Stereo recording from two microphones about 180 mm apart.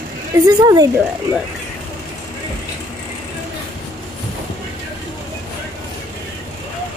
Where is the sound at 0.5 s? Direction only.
20° right (ahead or behind).